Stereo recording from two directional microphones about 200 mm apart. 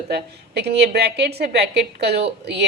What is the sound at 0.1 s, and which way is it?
A woman's voice, 55° right (ahead or behind).